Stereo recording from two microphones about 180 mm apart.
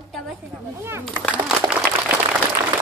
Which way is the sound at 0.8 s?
15° right (ahead or behind).